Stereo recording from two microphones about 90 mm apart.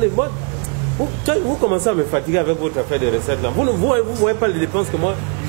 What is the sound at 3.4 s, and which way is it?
Speech, 20° right (ahead or behind).